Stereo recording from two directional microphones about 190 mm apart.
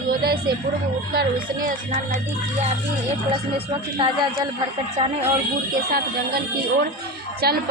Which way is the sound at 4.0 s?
30° right (ahead or behind).